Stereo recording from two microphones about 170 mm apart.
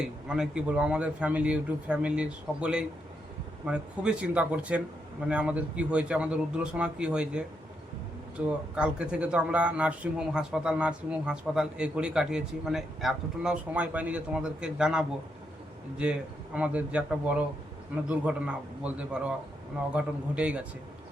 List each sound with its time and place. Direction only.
0.0 s speech: 5° right (ahead or behind)